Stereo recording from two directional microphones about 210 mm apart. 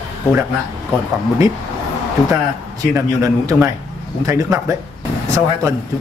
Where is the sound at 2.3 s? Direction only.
15° right (ahead or behind).